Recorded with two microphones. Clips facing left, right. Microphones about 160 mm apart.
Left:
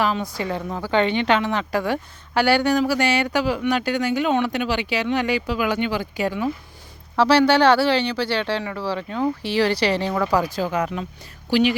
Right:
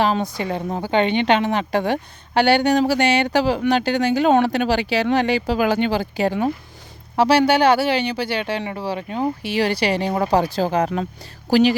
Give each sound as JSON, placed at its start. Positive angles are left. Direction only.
{"t": 0.3, "sound": "a woman's voice", "side_deg": -20}
{"t": 7.2, "sound": "speech", "side_deg": -15}
{"t": 10.2, "sound": "a woman's voice", "side_deg": -30}